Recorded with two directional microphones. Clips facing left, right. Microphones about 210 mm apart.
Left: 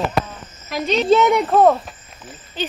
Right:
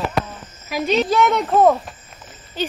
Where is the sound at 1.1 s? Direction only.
15° left (ahead or behind).